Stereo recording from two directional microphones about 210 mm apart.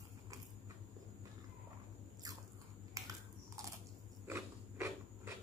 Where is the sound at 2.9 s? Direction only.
15° right (ahead or behind).